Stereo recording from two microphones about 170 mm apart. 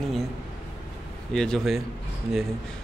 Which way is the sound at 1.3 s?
5° left (ahead or behind).